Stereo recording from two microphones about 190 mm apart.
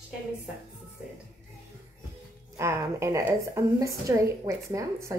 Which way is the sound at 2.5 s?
15° right (ahead or behind).